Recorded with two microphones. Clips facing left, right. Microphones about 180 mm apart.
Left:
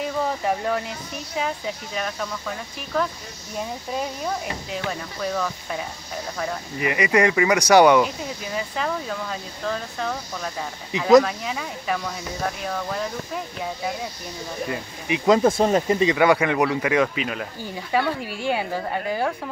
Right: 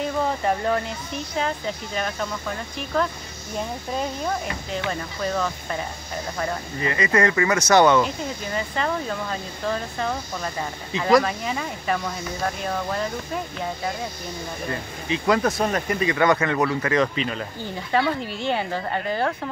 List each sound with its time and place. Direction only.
0.0 s a sound: 5° left (ahead or behind)
2.9 s speech: 5° left (ahead or behind)
4.7 s speech: 5° left (ahead or behind)
6.8 s speech: 15° left (ahead or behind)
14.7 s speech: 15° left (ahead or behind)
16.2 s speech: 10° left (ahead or behind)